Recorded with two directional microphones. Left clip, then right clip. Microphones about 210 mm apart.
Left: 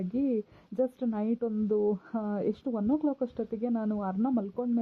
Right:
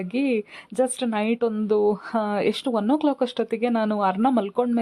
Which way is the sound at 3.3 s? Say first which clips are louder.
Right 10 dB; 15° right (ahead or behind).